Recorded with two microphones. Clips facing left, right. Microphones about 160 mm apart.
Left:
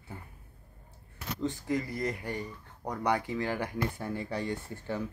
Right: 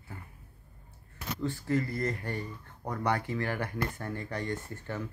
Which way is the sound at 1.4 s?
15° left (ahead or behind).